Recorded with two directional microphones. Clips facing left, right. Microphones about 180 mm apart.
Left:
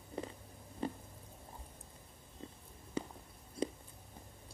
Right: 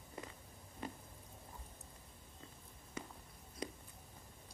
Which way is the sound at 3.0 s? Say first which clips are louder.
Left 8 dB; 30° left (ahead or behind).